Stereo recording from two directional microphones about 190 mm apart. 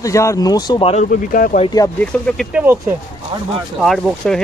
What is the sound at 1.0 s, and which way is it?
Speech, 50° left (ahead or behind).